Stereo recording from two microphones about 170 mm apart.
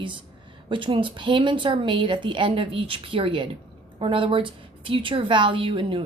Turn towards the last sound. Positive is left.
turn(degrees=-30)  # may be behind; listen again after turning